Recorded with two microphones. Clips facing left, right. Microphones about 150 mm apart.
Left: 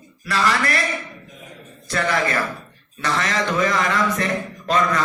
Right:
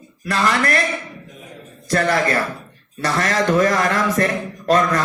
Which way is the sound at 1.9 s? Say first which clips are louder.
Right 4 dB; 40° right (ahead or behind).